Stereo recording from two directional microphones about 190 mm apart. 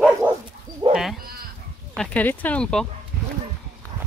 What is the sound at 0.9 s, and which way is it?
Sheep, centre (ahead or behind).